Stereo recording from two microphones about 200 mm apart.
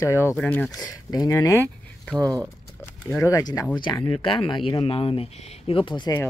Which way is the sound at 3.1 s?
15° left (ahead or behind).